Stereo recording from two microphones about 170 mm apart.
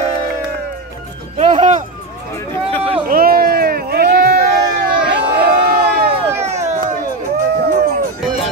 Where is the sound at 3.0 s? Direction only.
60° right (ahead or behind).